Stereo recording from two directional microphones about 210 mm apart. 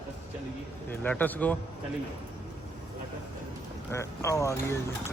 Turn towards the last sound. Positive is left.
turn(degrees=15)  # may be behind; listen again after turning